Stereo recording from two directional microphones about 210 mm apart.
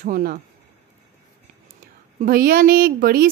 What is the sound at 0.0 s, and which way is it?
Speech, 40° right (ahead or behind).